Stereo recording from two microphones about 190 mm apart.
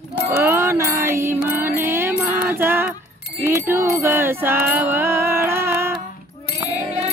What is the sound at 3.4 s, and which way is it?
Music, 15° right (ahead or behind).